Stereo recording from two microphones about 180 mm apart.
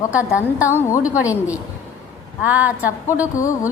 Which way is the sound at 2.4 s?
10° right (ahead or behind).